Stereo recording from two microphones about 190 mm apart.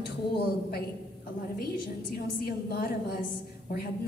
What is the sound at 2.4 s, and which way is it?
Speech, 55° left (ahead or behind).